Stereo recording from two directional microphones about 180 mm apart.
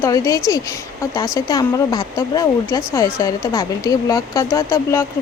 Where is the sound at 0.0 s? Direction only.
20° left (ahead or behind).